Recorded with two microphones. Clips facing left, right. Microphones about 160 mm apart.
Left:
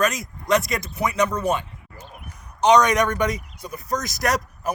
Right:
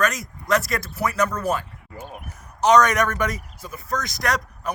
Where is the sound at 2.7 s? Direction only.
10° left (ahead or behind).